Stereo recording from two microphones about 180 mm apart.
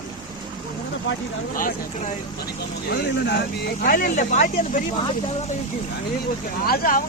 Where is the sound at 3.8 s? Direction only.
50° left (ahead or behind).